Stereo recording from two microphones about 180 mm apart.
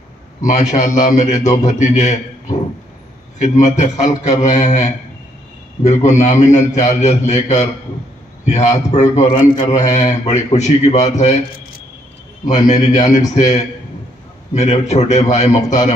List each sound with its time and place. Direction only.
0.4 s a man's voice: 40° left (ahead or behind)
9.3 s a man's voice: 30° left (ahead or behind)
9.8 s a man's voice: 40° left (ahead or behind)
12.6 s a man's voice: 40° left (ahead or behind)